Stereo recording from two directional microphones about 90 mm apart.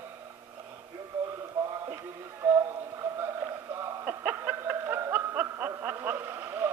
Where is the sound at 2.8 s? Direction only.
35° right (ahead or behind).